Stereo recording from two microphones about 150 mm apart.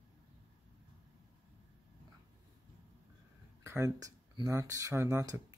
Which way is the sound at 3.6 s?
15° right (ahead or behind).